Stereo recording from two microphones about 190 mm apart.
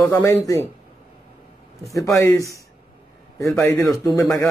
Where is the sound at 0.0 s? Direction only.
15° left (ahead or behind).